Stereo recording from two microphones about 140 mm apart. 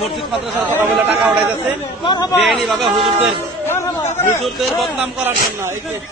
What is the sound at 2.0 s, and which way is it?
Speech, 30° left (ahead or behind).